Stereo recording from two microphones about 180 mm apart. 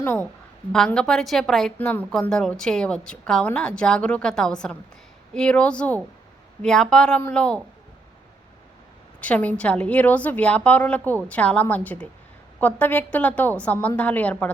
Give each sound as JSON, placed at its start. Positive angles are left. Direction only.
{"t": 0.0, "sound": "a woman's voice", "side_deg": 10}
{"t": 9.2, "sound": "a woman's voice", "side_deg": 10}